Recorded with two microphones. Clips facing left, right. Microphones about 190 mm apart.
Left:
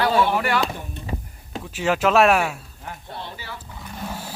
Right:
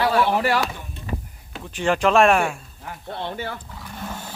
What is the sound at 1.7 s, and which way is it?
Speech, 5° left (ahead or behind).